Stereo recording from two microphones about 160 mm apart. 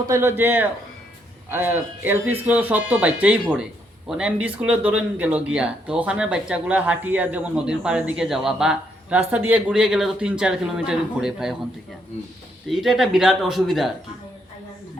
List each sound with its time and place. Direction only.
0.1 s speech: 15° right (ahead or behind)
12.6 s a man's voice: centre (ahead or behind)